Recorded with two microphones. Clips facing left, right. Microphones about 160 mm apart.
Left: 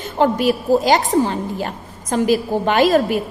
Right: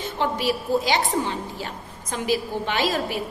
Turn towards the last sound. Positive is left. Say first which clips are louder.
# left 10 dB
turn(degrees=50)  # may be behind; listen again after turning